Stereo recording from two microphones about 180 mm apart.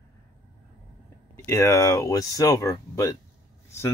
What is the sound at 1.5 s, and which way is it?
Speech, 15° left (ahead or behind).